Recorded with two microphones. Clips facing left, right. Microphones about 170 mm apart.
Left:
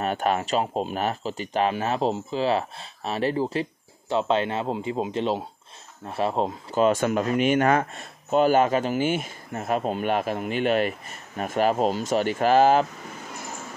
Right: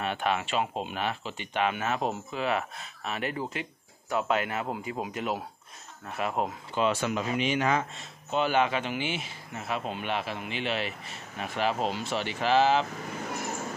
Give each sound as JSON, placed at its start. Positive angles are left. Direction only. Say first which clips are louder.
{"t": 0.0, "sound": "speech", "louder": "left 5 dB", "side_deg": 40}
{"t": 6.7, "sound": "speech", "louder": "left 7 dB", "side_deg": 45}